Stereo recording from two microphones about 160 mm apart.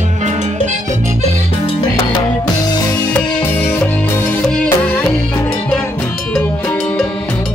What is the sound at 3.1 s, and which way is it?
Music, 10° left (ahead or behind).